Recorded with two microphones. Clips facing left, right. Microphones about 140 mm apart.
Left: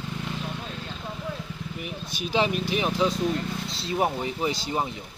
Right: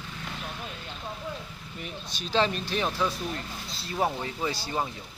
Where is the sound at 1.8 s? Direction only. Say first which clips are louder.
Left 3 dB; 10° left (ahead or behind).